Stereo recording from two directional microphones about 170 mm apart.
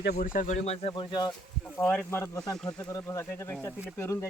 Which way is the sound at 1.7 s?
10° left (ahead or behind).